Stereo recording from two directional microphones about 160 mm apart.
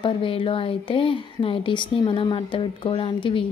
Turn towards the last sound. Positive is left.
turn(degrees=35)  # may be behind; listen again after turning